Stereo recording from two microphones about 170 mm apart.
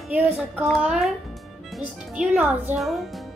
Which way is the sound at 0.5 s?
5° right (ahead or behind).